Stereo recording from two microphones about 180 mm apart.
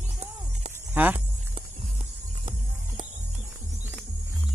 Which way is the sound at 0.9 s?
10° right (ahead or behind).